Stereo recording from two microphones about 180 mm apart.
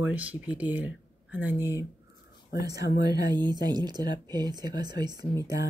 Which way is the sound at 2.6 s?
65° left (ahead or behind).